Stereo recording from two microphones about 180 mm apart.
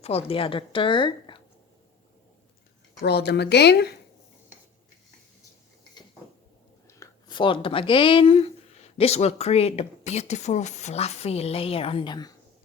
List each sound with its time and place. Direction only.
0.0 s a woman's voice: 35° left (ahead or behind)
3.0 s a woman's voice: 65° left (ahead or behind)
6.8 s speech: 20° left (ahead or behind)